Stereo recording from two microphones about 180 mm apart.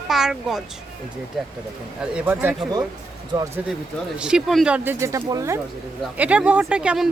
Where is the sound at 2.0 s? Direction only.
10° right (ahead or behind).